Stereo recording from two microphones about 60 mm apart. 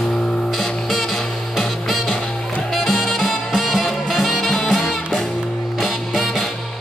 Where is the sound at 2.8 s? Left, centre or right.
Centre.